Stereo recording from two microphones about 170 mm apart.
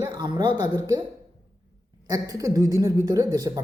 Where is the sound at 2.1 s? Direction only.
20° right (ahead or behind).